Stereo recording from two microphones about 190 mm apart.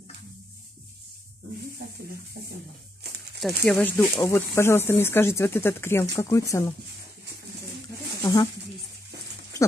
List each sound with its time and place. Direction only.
3.3 s speech: centre (ahead or behind)
8.2 s speech: 20° left (ahead or behind)